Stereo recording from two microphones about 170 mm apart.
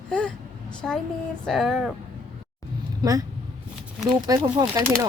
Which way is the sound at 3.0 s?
20° right (ahead or behind).